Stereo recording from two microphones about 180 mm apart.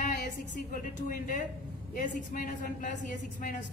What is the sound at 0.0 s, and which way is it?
A woman's voice, 45° left (ahead or behind).